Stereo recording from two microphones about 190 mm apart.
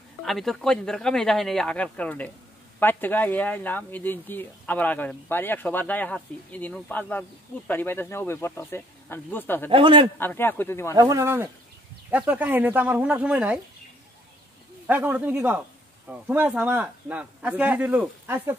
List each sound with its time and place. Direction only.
0.2 s speech: centre (ahead or behind)
9.7 s speech: 30° right (ahead or behind)
10.1 s speech: 10° left (ahead or behind)
11.0 s speech: 15° right (ahead or behind)
14.9 s speech: 10° right (ahead or behind)